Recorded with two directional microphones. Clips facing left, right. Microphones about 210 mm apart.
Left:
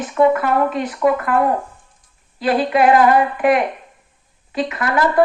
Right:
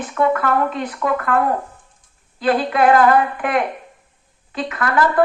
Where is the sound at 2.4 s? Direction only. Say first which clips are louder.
Left 1 dB; 15° left (ahead or behind).